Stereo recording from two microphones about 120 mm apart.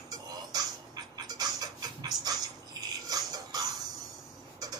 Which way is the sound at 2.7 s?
35° right (ahead or behind).